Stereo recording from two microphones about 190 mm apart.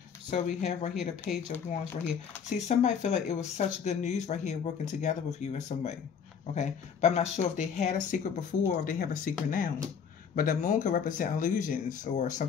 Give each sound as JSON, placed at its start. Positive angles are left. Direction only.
{"t": 0.3, "sound": "speech", "side_deg": 40}
{"t": 2.7, "sound": "speech", "side_deg": 40}